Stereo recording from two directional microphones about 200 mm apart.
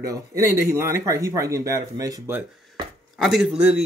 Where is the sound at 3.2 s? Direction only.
5° right (ahead or behind).